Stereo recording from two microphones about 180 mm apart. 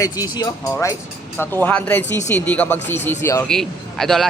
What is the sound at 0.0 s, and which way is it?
Speech, 20° left (ahead or behind).